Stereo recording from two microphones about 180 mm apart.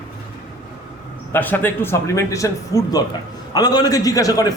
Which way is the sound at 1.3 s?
10° left (ahead or behind).